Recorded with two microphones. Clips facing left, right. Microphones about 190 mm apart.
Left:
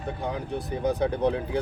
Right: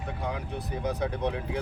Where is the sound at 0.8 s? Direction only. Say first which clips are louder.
Left 6 dB; 30° left (ahead or behind).